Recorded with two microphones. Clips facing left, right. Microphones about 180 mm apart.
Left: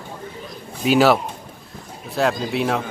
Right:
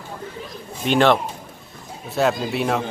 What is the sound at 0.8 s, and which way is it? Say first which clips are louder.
Speech: left 1 dB; 5° left (ahead or behind).